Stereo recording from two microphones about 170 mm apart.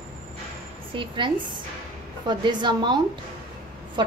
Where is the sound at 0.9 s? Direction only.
30° right (ahead or behind).